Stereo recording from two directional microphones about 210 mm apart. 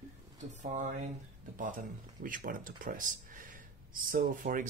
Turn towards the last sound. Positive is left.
turn(degrees=-40)  # may be behind; listen again after turning